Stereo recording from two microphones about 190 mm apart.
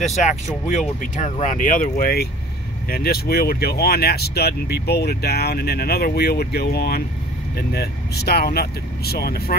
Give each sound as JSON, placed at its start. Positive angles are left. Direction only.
{"t": 0.0, "sound": "speech", "side_deg": 40}